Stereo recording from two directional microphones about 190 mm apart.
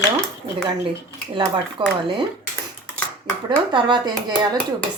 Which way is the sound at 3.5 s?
25° right (ahead or behind).